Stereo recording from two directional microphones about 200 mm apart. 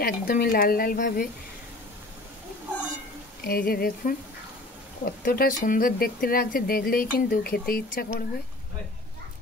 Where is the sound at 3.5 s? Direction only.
50° left (ahead or behind).